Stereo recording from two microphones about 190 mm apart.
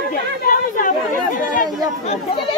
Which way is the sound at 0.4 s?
50° left (ahead or behind).